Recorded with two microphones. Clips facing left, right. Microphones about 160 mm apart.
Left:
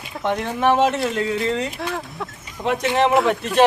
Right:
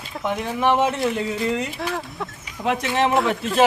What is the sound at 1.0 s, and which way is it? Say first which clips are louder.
Speech: left 1 dB; 15° right (ahead or behind).